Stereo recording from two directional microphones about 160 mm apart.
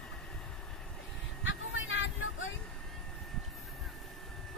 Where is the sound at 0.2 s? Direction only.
5° left (ahead or behind).